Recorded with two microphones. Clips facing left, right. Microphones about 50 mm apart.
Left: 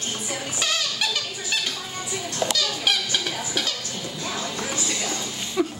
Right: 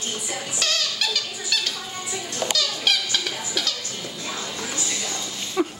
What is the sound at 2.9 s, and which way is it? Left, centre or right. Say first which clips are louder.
Speech: right 1 dB; centre.